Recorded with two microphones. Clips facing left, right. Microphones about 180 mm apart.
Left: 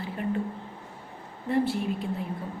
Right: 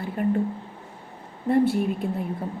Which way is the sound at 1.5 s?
50° right (ahead or behind).